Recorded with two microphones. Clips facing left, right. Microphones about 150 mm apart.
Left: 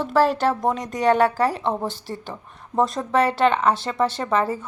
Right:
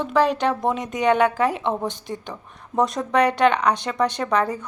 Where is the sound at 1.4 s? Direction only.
40° left (ahead or behind).